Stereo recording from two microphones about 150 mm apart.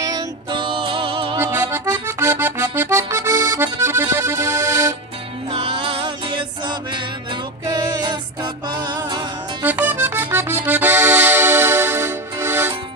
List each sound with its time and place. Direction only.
0.0 s music: 30° right (ahead or behind)
1.4 s accordion: 20° right (ahead or behind)
5.5 s music: 35° right (ahead or behind)
9.6 s accordion: 10° right (ahead or behind)